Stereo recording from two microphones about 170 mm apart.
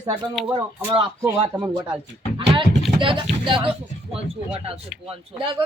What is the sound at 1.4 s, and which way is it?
Speech, 30° right (ahead or behind).